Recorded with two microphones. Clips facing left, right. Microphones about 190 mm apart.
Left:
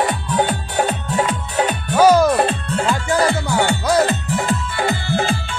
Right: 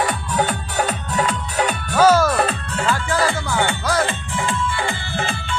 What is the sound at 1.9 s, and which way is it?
Music, 15° left (ahead or behind).